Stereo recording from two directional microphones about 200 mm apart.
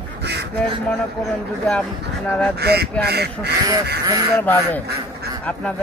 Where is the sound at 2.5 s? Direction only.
55° right (ahead or behind).